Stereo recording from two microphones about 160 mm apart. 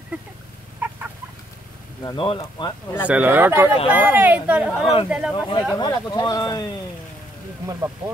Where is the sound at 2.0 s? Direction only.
30° left (ahead or behind).